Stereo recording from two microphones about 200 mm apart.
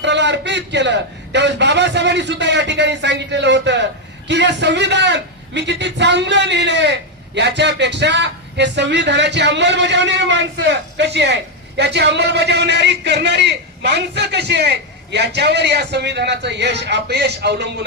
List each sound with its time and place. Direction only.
0.0 s a man's voice: 60° right (ahead or behind)